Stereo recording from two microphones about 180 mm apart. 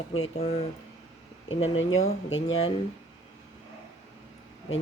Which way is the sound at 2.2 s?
90° left.